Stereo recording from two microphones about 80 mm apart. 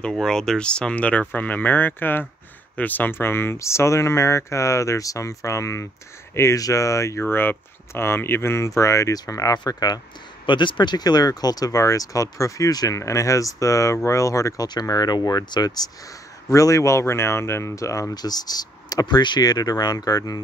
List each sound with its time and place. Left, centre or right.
0.0 s speech: centre; by 9.9 s left
10.4 s speech: left
14.7 s speech: left
16.4 s speech: left
18.1 s speech: left